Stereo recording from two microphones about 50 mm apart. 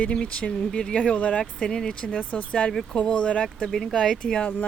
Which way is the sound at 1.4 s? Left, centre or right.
Centre.